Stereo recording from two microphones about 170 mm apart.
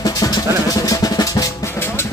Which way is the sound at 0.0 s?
20° left (ahead or behind).